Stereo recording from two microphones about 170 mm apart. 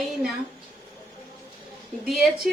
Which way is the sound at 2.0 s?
Centre (ahead or behind).